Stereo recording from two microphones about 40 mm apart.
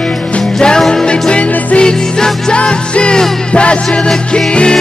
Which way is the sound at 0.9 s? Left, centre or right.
Left.